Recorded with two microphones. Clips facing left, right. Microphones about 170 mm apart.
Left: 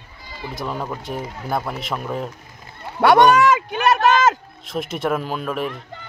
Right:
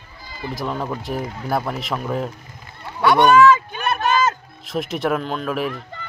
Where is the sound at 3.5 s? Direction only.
80° left.